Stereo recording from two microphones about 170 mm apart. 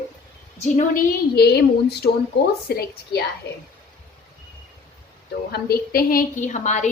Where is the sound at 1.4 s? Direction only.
70° left (ahead or behind).